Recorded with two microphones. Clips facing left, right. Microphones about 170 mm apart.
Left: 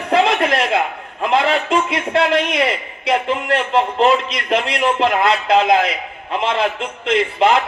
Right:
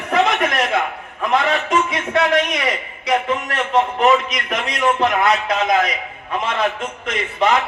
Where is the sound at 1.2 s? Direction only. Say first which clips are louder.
Left 2 dB; 30° left (ahead or behind).